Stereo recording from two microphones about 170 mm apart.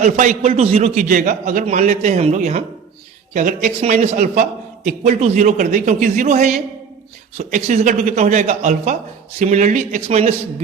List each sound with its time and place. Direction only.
0.0 s a man's voice: 45° right (ahead or behind)